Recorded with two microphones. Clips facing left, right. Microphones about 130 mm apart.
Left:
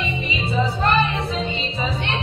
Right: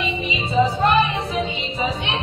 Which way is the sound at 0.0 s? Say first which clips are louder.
Right 1 dB; 20° right (ahead or behind).